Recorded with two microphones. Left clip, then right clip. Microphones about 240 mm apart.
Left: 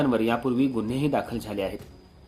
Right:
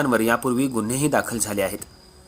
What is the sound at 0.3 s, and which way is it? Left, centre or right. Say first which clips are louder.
A man's voice: right 4 dB; right.